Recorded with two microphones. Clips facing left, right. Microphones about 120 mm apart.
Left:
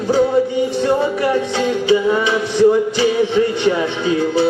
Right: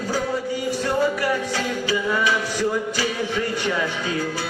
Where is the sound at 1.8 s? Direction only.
25° left (ahead or behind).